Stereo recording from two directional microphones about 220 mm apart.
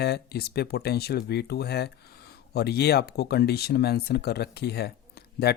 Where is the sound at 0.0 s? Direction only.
45° left (ahead or behind).